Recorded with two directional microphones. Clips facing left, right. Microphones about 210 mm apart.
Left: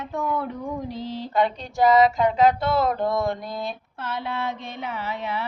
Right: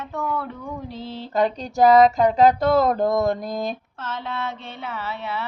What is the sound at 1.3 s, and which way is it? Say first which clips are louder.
Female singing: right 3 dB; 40° right (ahead or behind).